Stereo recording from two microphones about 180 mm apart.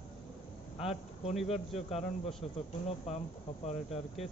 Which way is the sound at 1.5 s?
35° left (ahead or behind).